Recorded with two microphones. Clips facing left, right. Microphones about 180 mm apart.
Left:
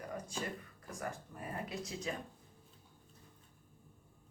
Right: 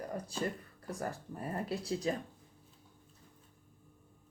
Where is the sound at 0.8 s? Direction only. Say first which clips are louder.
Right 5 dB; 35° right (ahead or behind).